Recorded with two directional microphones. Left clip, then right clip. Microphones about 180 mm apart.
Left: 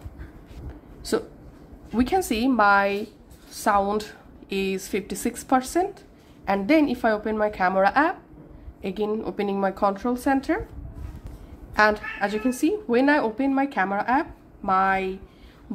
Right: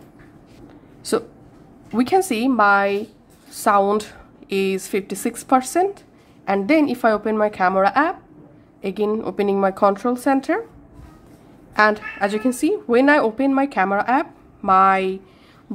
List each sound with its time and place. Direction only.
2.0 s a woman's voice: 20° right (ahead or behind)
11.7 s a woman's voice: 15° right (ahead or behind)